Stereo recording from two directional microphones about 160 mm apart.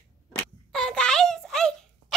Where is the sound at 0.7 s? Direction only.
5° left (ahead or behind).